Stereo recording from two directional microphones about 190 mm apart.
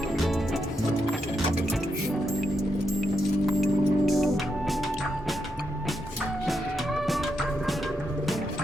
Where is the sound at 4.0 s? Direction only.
Centre (ahead or behind).